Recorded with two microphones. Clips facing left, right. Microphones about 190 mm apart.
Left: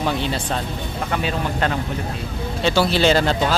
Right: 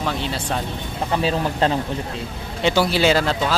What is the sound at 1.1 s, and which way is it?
Speech, 30° right (ahead or behind).